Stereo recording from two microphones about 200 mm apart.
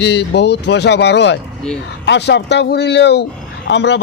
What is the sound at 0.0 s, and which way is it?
Speech, 60° left (ahead or behind).